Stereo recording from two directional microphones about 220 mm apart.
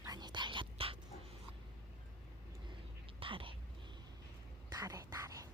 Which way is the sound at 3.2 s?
25° right (ahead or behind).